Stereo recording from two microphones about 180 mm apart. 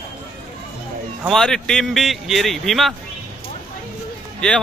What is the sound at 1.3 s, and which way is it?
A man's voice, centre (ahead or behind).